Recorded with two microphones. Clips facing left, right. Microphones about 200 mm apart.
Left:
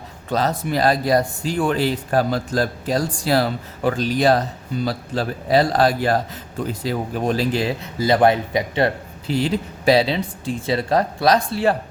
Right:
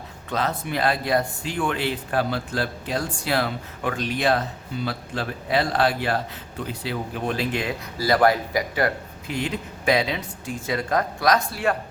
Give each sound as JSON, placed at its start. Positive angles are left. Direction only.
{"t": 0.3, "sound": "a man's voice", "side_deg": 35}